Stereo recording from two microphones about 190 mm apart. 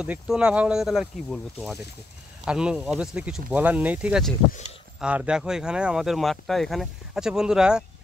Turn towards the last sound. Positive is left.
turn(degrees=-5)  # may be behind; listen again after turning